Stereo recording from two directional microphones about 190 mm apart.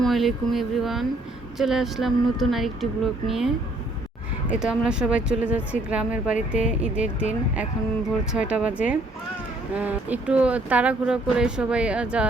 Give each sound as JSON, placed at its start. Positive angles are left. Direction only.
{"t": 0.0, "sound": "speech", "side_deg": 0}
{"t": 4.5, "sound": "speech", "side_deg": -5}